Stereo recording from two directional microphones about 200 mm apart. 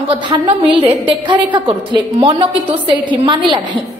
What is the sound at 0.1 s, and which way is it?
A woman's voice, 25° right (ahead or behind).